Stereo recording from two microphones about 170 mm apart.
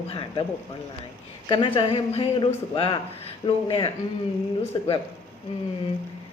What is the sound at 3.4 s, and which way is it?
Speech, 35° left (ahead or behind).